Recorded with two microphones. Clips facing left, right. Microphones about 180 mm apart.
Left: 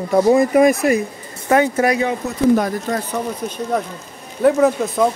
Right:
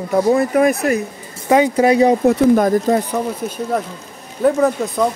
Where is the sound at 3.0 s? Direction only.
10° right (ahead or behind).